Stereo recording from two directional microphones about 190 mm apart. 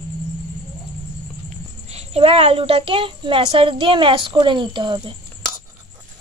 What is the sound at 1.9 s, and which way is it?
A woman's voice, 35° right (ahead or behind).